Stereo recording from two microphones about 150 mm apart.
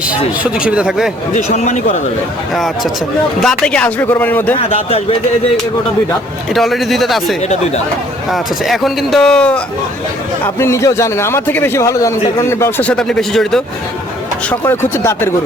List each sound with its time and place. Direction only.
0.6 s speech: 5° right (ahead or behind)
1.3 s speech: 50° left (ahead or behind)
3.4 s a man's voice: 5° left (ahead or behind)
4.7 s speech: 40° left (ahead or behind)
6.5 s speech: centre (ahead or behind)
10.4 s a man's voice: 20° left (ahead or behind); by 13.6 s 5° left (ahead or behind)
14.5 s a man's voice: 15° left (ahead or behind)